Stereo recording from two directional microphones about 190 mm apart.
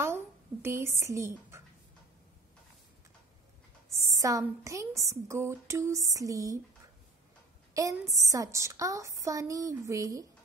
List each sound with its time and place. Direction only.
0.0 s a sound: 15° right (ahead or behind)
4.1 s speech: 15° right (ahead or behind)
7.7 s speech: 15° right (ahead or behind)